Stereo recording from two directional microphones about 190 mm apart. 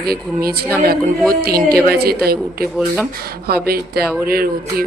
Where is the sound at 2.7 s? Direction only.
5° right (ahead or behind).